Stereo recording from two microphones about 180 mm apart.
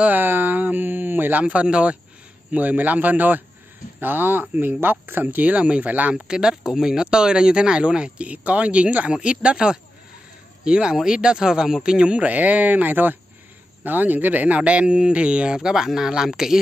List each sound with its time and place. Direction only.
0.0 s speech: 10° right (ahead or behind)